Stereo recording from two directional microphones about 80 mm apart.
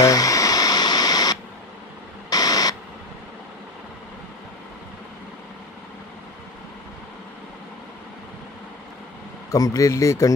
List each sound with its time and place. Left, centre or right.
0.0 s radio: left
2.2 s a sound: left
9.5 s speech: left